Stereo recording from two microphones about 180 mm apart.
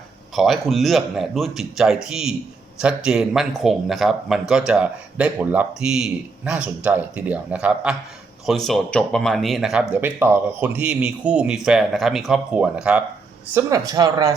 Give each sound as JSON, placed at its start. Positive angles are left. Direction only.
{"t": 0.3, "sound": "speech", "side_deg": 0}